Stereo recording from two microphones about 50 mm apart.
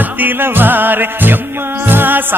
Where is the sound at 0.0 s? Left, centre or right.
Right.